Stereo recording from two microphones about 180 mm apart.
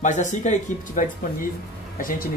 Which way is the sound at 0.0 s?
45° left (ahead or behind).